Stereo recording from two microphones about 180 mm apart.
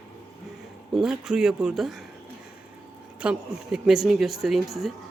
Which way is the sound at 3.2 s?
5° right (ahead or behind).